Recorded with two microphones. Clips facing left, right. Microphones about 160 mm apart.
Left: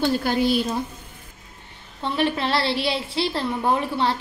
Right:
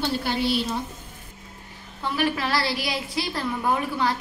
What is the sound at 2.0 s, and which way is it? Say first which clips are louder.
A woman's voice: left 2 dB; 25° left (ahead or behind).